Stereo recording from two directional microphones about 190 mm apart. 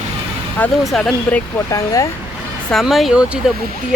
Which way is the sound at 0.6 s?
5° left (ahead or behind).